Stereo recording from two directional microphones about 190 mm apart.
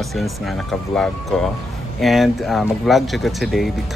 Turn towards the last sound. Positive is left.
turn(degrees=0)  # may be behind; listen again after turning